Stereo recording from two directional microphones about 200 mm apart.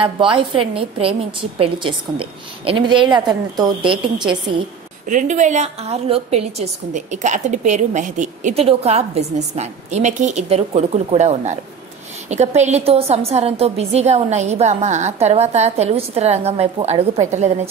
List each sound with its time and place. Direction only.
0.0 s a woman's voice: 25° right (ahead or behind)
5.0 s a woman's voice: 40° right (ahead or behind)